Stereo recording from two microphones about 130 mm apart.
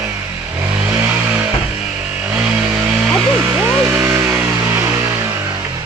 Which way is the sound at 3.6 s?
15° right (ahead or behind).